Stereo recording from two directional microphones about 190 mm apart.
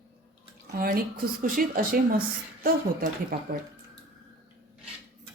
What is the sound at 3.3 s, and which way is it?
Speech, 50° right (ahead or behind).